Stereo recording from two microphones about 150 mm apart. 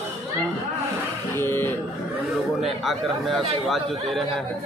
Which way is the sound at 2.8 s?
Centre (ahead or behind).